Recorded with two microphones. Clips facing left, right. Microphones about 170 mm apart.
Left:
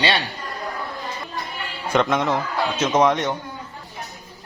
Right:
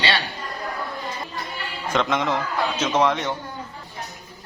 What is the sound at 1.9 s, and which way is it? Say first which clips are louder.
Speech: left 3 dB; 5° left (ahead or behind).